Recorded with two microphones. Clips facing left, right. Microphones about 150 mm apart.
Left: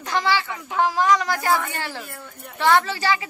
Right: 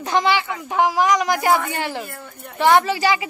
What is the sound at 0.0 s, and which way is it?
A woman's voice, 20° right (ahead or behind).